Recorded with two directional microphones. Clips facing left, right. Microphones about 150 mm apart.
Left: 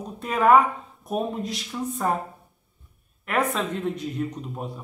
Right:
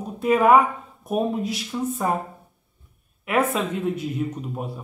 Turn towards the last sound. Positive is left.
turn(degrees=-5)  # may be behind; listen again after turning